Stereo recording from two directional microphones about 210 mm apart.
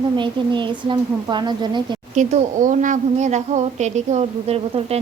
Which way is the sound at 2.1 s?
35° right (ahead or behind).